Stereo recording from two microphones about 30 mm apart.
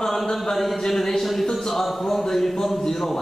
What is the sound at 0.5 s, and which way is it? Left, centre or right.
Speech, centre.